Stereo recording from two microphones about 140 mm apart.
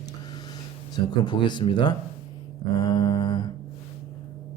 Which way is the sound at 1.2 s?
35° left (ahead or behind).